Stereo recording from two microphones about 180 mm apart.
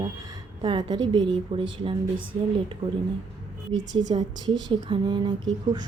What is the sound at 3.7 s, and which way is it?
A woman's voice, 20° right (ahead or behind).